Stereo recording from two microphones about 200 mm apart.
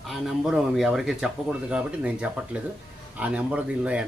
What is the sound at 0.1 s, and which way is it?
Speech, centre (ahead or behind).